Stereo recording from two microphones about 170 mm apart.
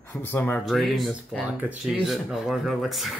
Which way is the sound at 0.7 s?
Centre (ahead or behind).